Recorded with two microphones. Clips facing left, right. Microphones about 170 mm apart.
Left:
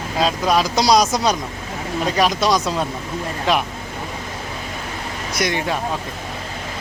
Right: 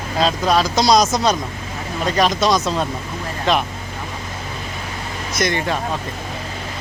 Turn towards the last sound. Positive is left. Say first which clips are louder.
# right 1 dB
turn(degrees=10)  # may be behind; listen again after turning